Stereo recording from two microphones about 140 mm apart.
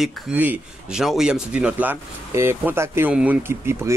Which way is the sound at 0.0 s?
10° right (ahead or behind).